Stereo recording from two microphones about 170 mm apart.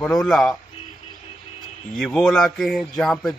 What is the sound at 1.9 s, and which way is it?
Speech, centre (ahead or behind).